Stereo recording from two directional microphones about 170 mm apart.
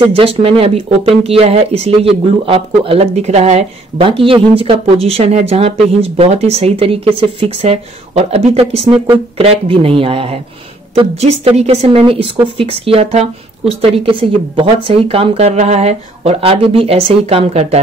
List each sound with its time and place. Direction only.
0.0 s speech: 35° right (ahead or behind)